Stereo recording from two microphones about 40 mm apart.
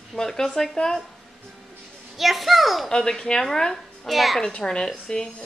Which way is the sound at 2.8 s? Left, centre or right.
Centre.